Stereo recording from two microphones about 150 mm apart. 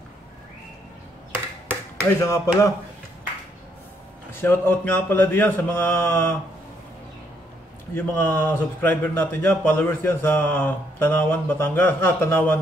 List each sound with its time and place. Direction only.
2.0 s speech: 20° left (ahead or behind)
4.3 s speech: 15° left (ahead or behind)
7.9 s speech: 15° left (ahead or behind)